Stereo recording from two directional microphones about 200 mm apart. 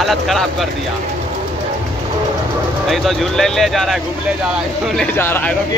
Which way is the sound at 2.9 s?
Centre (ahead or behind).